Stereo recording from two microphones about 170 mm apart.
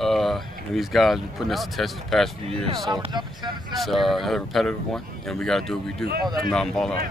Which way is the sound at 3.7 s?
Centre (ahead or behind).